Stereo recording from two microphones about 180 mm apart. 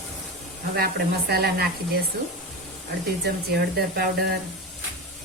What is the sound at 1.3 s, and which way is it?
Speech, 60° right (ahead or behind).